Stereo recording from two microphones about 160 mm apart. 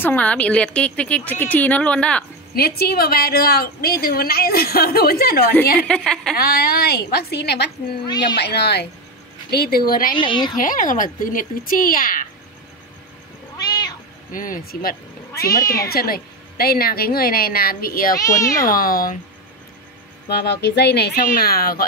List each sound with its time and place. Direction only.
0.0 s speech: 10° left (ahead or behind)
2.5 s a woman's voice: 75° left (ahead or behind)
5.8 s a woman's voice: 5° left (ahead or behind)
6.3 s a woman's voice: 70° left (ahead or behind); by 8.8 s 90° left
9.5 s a woman's voice: 75° left (ahead or behind)
10.1 s speech: 30° left (ahead or behind)
10.6 s speech: 55° left (ahead or behind)
13.6 s cat: 25° left (ahead or behind)
14.3 s a woman's voice: 60° left (ahead or behind)
18.1 s speech: 20° left (ahead or behind)
18.6 s speech: 65° left (ahead or behind)
20.2 s speech: 90° left; by 21.8 s 70° left (ahead or behind)